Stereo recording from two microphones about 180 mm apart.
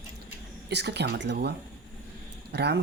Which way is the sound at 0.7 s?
70° right (ahead or behind).